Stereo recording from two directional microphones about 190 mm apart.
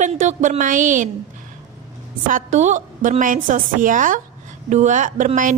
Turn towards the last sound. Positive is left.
turn(degrees=-40)  # may be behind; listen again after turning